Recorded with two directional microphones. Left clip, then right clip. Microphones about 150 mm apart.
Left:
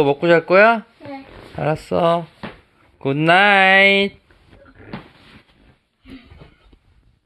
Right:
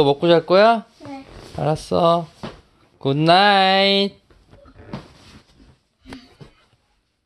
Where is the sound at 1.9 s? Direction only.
15° right (ahead or behind).